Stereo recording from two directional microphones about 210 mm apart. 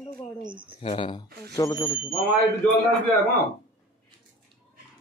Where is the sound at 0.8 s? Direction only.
25° left (ahead or behind).